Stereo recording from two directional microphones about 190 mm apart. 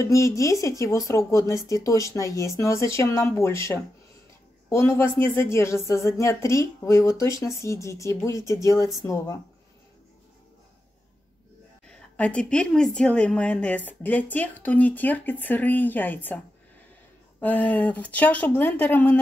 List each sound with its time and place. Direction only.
0.0 s a woman's voice: 15° left (ahead or behind)
11.9 s a woman's voice: 5° left (ahead or behind)
17.4 s a woman's voice: 10° left (ahead or behind)